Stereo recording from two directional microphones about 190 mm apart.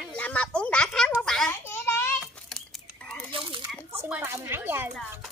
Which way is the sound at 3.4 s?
25° right (ahead or behind).